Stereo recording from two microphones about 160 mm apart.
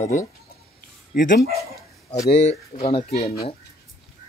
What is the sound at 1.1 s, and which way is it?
Speech, 70° left (ahead or behind).